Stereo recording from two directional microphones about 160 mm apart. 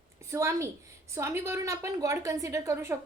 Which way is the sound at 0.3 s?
15° right (ahead or behind).